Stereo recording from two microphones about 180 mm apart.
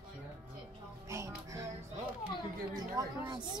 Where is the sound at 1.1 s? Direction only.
15° right (ahead or behind).